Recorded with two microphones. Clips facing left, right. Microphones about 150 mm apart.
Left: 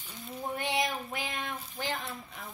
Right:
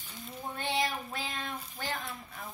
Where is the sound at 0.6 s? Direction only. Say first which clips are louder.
Even; 20° left (ahead or behind).